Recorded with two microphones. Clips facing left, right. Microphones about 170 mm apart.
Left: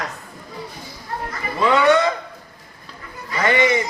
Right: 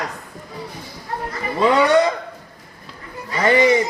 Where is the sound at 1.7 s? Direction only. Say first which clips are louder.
Even; 35° right (ahead or behind).